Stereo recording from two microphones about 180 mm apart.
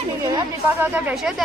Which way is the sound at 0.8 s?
5° right (ahead or behind).